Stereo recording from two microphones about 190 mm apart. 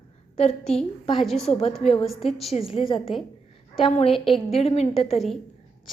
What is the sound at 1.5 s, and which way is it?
Speech, 30° left (ahead or behind).